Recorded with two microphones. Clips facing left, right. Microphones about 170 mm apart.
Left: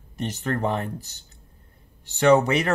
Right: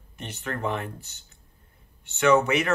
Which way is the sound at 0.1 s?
40° left (ahead or behind).